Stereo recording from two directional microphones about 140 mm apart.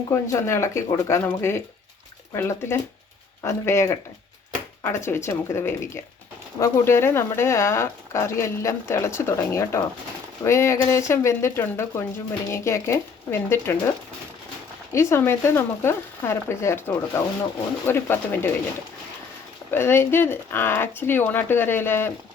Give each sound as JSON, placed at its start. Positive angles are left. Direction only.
{"t": 0.1, "sound": "speech", "side_deg": 20}
{"t": 14.9, "sound": "speech", "side_deg": 15}
{"t": 19.7, "sound": "speech", "side_deg": 15}